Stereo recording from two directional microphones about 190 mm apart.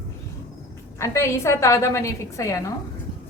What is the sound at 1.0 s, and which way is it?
A woman's voice, 15° left (ahead or behind).